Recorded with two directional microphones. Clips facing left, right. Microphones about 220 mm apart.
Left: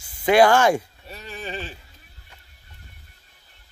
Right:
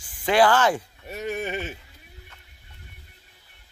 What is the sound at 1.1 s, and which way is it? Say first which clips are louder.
Speech: right 10 dB; 55° right (ahead or behind).